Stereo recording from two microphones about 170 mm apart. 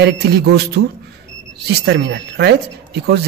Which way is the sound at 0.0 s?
80° right.